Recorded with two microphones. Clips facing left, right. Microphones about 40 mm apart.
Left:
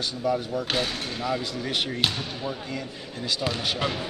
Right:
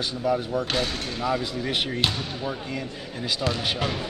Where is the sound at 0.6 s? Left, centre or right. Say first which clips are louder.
Right 1 dB; centre.